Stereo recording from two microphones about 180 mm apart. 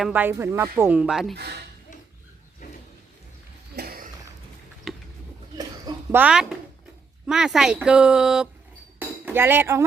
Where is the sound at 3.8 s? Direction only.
55° right (ahead or behind).